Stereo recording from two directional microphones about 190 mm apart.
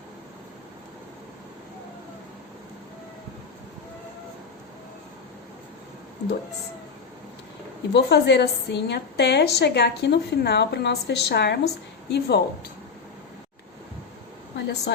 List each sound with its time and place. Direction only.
7.9 s a woman's voice: 60° left (ahead or behind)
14.5 s a woman's voice: 65° left (ahead or behind)